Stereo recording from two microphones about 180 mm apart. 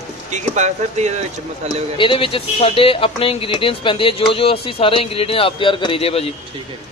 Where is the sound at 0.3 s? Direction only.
40° right (ahead or behind).